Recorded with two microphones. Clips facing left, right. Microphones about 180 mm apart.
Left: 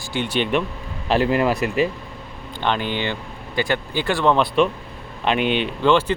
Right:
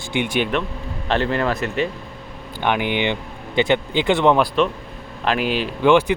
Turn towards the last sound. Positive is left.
turn(degrees=-15)  # may be behind; listen again after turning